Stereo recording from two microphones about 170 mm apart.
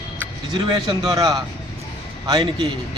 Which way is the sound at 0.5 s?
25° right (ahead or behind).